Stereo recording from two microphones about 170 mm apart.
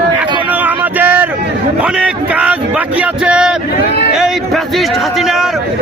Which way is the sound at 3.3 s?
5° right (ahead or behind).